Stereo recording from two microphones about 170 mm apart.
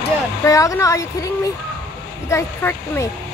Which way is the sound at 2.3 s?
15° left (ahead or behind).